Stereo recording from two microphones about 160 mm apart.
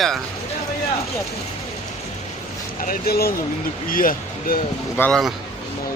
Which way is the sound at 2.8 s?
70° left (ahead or behind).